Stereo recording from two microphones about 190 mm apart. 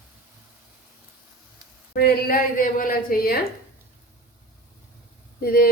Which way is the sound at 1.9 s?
50° left (ahead or behind).